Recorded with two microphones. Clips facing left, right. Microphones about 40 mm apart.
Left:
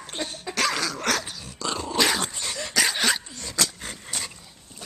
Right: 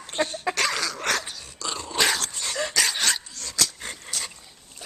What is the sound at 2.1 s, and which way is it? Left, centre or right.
Dog, centre.